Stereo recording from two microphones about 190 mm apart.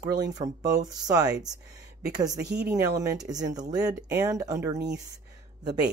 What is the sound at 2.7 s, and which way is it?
Speech, 15° right (ahead or behind).